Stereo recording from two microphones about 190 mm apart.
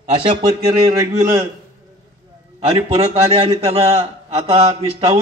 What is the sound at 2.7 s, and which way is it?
Speech, 35° right (ahead or behind).